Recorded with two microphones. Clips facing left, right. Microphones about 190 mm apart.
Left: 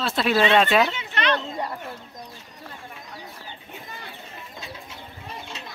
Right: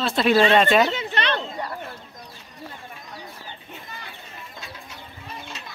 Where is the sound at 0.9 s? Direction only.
35° right (ahead or behind).